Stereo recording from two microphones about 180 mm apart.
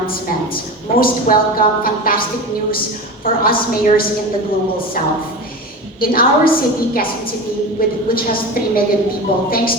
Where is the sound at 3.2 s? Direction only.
55° left (ahead or behind).